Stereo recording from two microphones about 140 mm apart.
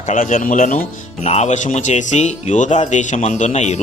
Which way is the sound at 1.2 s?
50° left (ahead or behind).